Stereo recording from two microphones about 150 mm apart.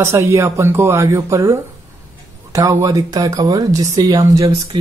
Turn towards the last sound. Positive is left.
turn(degrees=-25)  # may be behind; listen again after turning